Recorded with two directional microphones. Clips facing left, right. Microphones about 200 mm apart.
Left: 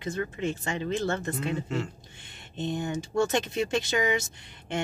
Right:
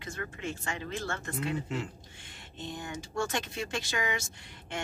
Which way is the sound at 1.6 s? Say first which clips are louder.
Left 4 dB; 15° right (ahead or behind).